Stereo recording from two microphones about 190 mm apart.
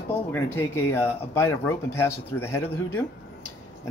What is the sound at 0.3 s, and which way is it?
Speech, 10° left (ahead or behind).